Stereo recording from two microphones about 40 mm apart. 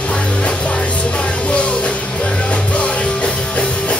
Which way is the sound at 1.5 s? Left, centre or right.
Left.